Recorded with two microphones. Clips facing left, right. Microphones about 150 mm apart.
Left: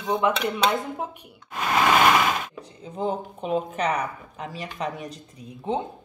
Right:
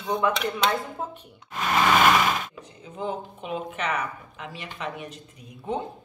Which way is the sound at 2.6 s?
35° left (ahead or behind).